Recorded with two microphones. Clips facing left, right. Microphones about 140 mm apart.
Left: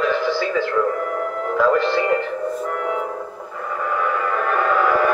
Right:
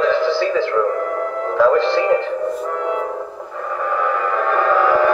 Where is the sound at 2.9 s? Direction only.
10° right (ahead or behind).